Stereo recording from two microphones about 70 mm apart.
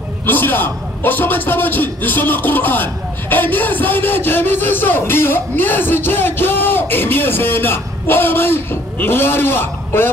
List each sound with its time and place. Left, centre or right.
0.3 s a man's voice: left